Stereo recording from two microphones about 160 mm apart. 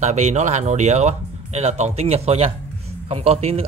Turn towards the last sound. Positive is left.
turn(degrees=-40)  # may be behind; listen again after turning